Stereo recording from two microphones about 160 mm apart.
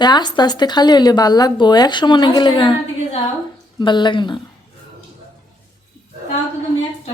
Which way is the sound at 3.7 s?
30° left (ahead or behind).